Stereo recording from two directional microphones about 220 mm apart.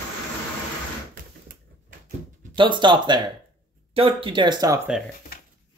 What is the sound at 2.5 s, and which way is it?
Speech, 20° right (ahead or behind).